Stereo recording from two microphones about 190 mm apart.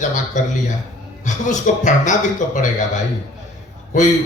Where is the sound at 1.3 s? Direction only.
40° left (ahead or behind).